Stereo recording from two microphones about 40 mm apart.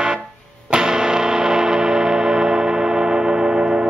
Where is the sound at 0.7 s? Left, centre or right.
Centre.